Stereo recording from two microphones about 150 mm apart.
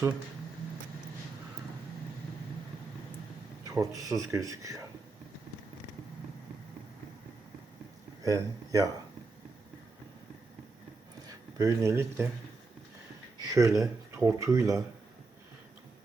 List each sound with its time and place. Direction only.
3.7 s speech: 20° right (ahead or behind)
8.2 s speech: 25° right (ahead or behind)
11.3 s speech: 20° right (ahead or behind)
13.4 s speech: 20° right (ahead or behind)